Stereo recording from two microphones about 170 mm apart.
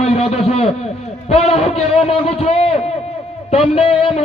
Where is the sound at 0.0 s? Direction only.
35° left (ahead or behind).